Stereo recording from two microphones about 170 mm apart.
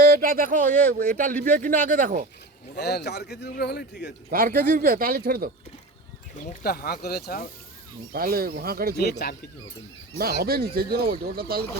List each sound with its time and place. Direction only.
0.0 s speech: 55° right (ahead or behind)
2.7 s speech: 75° left (ahead or behind)
4.3 s speech: 60° right (ahead or behind)
6.3 s speech: 45° left (ahead or behind)
6.7 s speech: 65° left (ahead or behind)
8.1 s speech: 60° right (ahead or behind)
9.2 s speech: 65° left (ahead or behind)
10.4 s speech: 60° right (ahead or behind)